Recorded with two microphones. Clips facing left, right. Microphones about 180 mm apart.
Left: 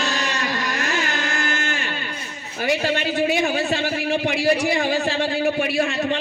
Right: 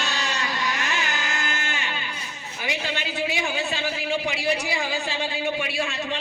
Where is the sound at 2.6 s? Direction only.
50° left (ahead or behind).